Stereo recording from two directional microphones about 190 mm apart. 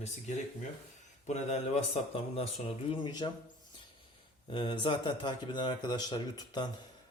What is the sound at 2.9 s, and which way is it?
Speech, 25° left (ahead or behind).